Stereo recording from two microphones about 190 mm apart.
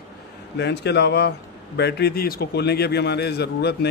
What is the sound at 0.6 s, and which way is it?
A man's voice, 65° left (ahead or behind).